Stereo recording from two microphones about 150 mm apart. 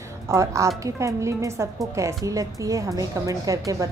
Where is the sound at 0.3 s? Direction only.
20° right (ahead or behind).